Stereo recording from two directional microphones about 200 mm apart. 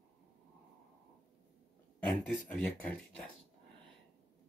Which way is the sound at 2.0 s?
5° left (ahead or behind).